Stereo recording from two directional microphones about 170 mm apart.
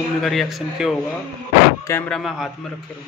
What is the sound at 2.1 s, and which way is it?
Speech, centre (ahead or behind).